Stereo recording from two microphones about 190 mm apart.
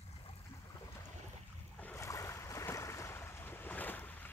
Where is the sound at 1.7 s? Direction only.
10° left (ahead or behind).